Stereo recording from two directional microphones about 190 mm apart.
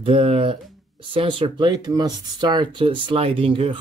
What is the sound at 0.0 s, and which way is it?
Speech, 30° right (ahead or behind).